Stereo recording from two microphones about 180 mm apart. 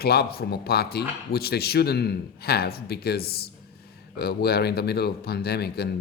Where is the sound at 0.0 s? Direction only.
60° left (ahead or behind).